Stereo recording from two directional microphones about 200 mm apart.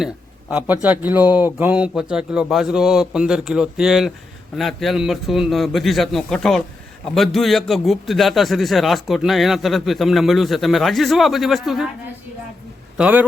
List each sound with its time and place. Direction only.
0.5 s a man's voice: 10° right (ahead or behind)
13.0 s speech: 5° right (ahead or behind)